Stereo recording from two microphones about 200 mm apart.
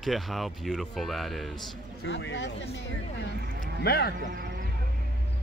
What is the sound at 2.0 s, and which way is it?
Speech, 60° left (ahead or behind).